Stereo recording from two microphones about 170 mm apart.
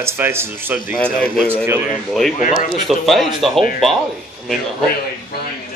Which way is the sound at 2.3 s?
45° left (ahead or behind).